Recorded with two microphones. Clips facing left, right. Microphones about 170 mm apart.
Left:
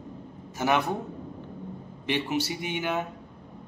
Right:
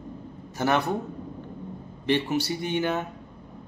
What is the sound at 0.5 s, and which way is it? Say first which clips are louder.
Speech: right 1 dB; 15° left (ahead or behind).